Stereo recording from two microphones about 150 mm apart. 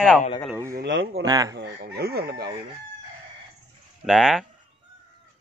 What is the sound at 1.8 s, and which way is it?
Chicken, 90° right.